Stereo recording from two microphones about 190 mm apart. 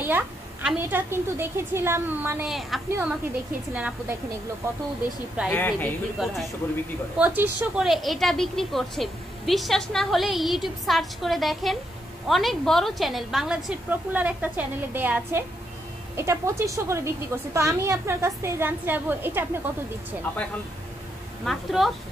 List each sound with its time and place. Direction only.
0.0 s a woman's voice: 10° right (ahead or behind)
5.5 s speech: 10° left (ahead or behind)
6.1 s a woman's voice: centre (ahead or behind)
21.5 s a woman's voice: centre (ahead or behind)